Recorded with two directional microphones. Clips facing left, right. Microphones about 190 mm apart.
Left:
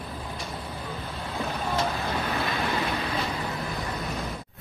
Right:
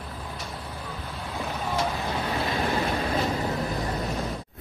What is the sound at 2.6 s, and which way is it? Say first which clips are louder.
Vehicle: right 2 dB; 40° right (ahead or behind).